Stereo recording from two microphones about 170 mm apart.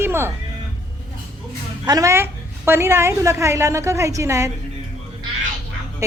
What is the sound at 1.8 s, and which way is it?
A woman's voice, 20° right (ahead or behind).